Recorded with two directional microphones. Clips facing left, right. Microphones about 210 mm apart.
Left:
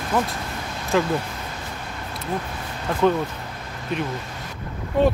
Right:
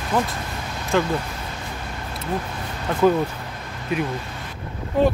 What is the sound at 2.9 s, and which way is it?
Speech, centre (ahead or behind).